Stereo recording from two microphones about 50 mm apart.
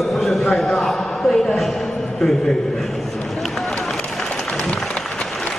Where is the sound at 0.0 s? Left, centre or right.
Centre.